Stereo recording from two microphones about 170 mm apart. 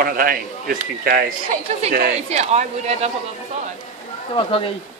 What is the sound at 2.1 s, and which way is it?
Speech, 40° right (ahead or behind).